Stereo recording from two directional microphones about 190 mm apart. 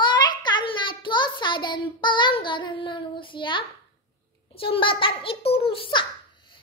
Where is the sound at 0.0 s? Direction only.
25° left (ahead or behind).